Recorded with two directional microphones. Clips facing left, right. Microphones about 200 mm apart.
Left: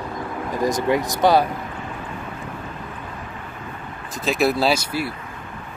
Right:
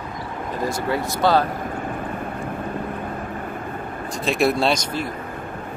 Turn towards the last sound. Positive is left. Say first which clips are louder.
# left 1 dB
turn(degrees=10)  # may be behind; listen again after turning